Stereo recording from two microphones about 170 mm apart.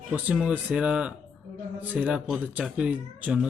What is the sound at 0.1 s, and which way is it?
Speech, 10° right (ahead or behind).